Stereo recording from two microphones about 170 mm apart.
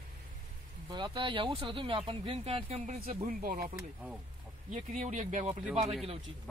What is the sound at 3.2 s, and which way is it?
Speech, 60° right (ahead or behind).